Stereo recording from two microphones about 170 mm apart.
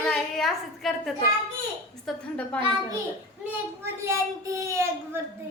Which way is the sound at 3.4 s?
15° right (ahead or behind).